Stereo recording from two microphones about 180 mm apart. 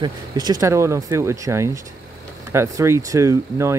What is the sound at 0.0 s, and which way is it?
Speech, 20° right (ahead or behind).